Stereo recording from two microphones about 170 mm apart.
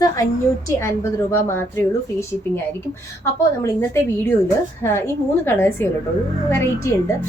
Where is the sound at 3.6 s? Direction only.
15° left (ahead or behind).